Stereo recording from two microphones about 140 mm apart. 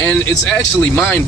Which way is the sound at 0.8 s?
15° left (ahead or behind).